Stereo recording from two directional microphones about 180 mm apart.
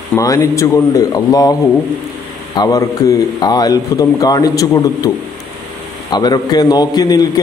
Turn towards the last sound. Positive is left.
turn(degrees=20)  # may be behind; listen again after turning